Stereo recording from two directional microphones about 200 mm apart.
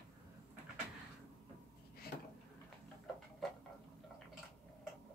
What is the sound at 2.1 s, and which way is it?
Drawer open or close, 50° left (ahead or behind).